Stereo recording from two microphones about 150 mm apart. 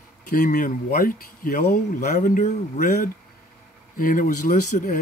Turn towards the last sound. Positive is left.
turn(degrees=65)  # may be behind; listen again after turning